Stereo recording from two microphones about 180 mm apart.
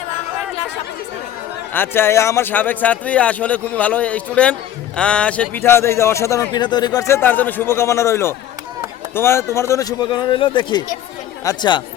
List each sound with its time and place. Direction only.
1.7 s a man's voice: 10° left (ahead or behind)